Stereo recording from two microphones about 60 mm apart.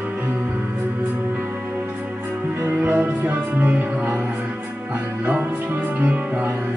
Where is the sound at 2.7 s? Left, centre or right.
Right.